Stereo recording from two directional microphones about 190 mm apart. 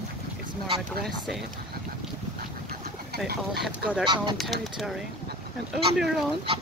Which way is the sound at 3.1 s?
60° right (ahead or behind).